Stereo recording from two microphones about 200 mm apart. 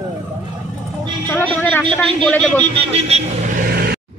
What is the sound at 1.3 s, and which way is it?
Speech, 10° left (ahead or behind).